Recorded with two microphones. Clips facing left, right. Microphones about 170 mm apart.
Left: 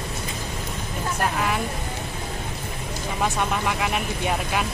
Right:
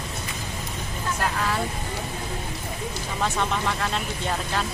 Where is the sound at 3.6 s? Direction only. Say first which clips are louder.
Left 2 dB; 15° left (ahead or behind).